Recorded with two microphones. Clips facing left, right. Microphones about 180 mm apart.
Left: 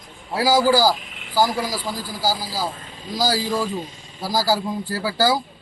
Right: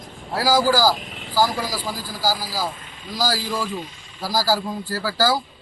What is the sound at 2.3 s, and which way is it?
A man's voice, 20° left (ahead or behind).